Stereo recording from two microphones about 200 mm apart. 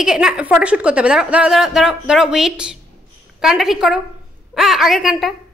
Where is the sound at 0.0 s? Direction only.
5° right (ahead or behind).